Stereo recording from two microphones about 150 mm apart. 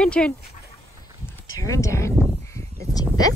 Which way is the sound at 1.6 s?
20° left (ahead or behind).